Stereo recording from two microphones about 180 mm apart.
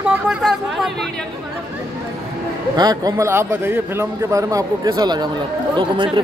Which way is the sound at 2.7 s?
20° right (ahead or behind).